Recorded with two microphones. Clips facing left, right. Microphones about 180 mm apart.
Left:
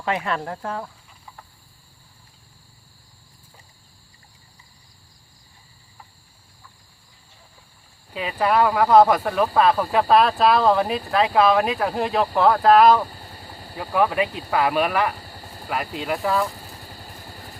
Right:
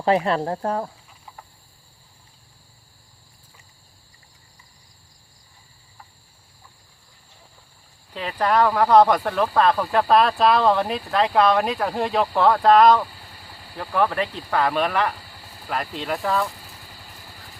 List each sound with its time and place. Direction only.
0.0 s speech: 35° right (ahead or behind)
8.1 s speech: 5° left (ahead or behind)
13.1 s vehicle: 40° left (ahead or behind)
13.7 s speech: 5° left (ahead or behind)
15.2 s vehicle: 40° left (ahead or behind)
15.6 s speech: 5° left (ahead or behind)
16.6 s vehicle: 40° left (ahead or behind)